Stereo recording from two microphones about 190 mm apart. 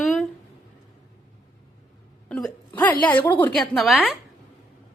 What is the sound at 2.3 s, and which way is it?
Speech, 5° left (ahead or behind).